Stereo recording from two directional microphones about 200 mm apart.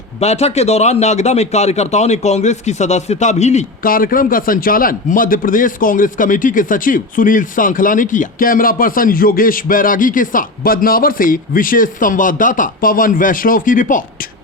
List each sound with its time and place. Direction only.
0.2 s speech: 30° left (ahead or behind)